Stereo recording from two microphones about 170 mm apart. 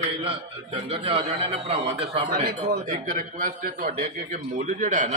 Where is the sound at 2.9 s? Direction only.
50° right (ahead or behind).